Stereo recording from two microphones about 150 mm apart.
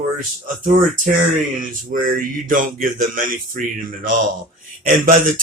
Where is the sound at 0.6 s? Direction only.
65° right (ahead or behind).